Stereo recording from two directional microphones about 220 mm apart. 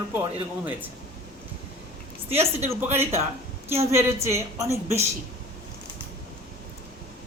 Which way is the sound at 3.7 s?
10° right (ahead or behind).